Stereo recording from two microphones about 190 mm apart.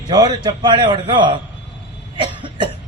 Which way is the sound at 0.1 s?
20° right (ahead or behind).